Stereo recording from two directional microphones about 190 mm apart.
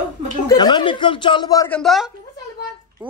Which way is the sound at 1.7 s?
5° left (ahead or behind).